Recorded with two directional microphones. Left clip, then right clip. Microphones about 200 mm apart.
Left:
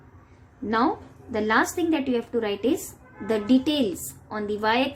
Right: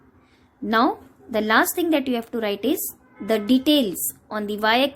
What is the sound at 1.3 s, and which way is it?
A woman's voice, 45° right (ahead or behind).